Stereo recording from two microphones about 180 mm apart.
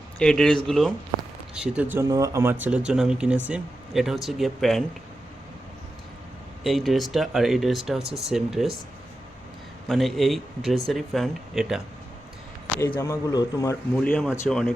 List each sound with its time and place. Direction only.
0.2 s speech: 5° left (ahead or behind)
6.6 s speech: centre (ahead or behind)
9.9 s speech: centre (ahead or behind)
13.0 s a man's voice: 15° left (ahead or behind)
13.9 s speech: 5° left (ahead or behind)